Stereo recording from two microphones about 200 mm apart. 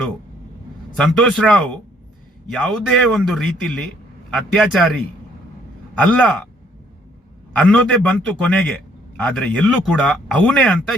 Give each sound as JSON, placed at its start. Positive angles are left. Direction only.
{"t": 0.9, "sound": "a man's voice", "side_deg": 0}
{"t": 6.0, "sound": "a man's voice", "side_deg": 5}
{"t": 7.7, "sound": "a man's voice", "side_deg": 5}